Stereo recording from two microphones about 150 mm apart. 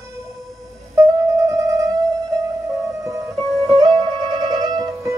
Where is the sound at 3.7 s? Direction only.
30° right (ahead or behind).